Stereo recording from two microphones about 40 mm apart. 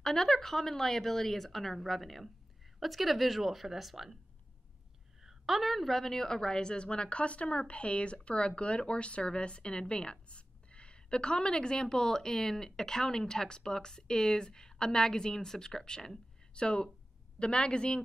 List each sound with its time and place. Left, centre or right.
0.0 s a woman's voice: centre
5.2 s a woman's voice: centre; by 18.0 s left